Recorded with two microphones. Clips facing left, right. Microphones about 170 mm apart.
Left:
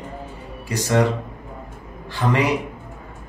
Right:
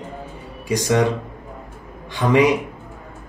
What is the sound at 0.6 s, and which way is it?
Speech, 15° right (ahead or behind).